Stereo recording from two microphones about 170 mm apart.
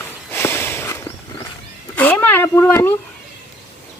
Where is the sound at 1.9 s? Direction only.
10° left (ahead or behind).